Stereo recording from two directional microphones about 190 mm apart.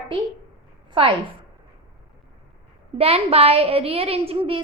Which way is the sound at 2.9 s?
30° right (ahead or behind).